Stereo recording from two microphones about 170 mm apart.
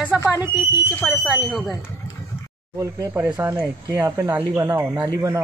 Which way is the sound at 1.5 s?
Centre (ahead or behind).